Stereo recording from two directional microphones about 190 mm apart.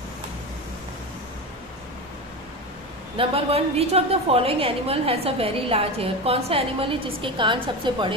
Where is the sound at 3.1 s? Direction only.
30° right (ahead or behind).